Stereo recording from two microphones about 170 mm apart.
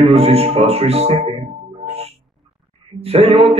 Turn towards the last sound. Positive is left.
turn(degrees=-35)  # may be behind; listen again after turning